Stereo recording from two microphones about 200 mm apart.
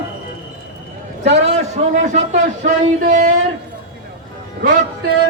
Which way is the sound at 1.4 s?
35° right (ahead or behind).